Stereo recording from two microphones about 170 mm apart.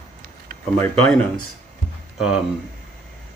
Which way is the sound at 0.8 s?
10° left (ahead or behind).